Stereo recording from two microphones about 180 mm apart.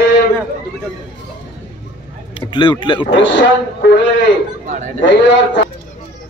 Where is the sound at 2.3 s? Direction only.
30° left (ahead or behind).